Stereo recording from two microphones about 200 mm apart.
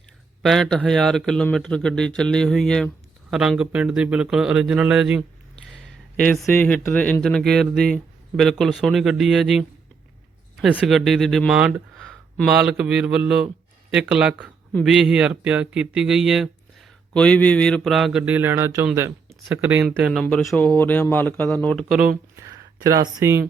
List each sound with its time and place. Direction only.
0.4 s speech: 5° left (ahead or behind)
22.4 s speech: 15° right (ahead or behind)